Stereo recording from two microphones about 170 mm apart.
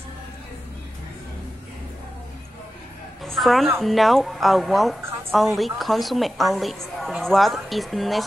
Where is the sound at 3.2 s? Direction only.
Centre (ahead or behind).